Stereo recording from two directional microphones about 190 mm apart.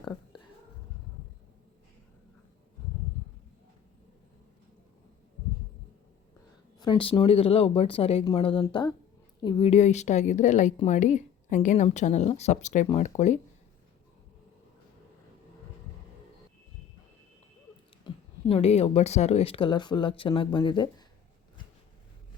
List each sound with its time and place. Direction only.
6.7 s a woman's voice: 25° left (ahead or behind)
18.0 s speech: 30° left (ahead or behind)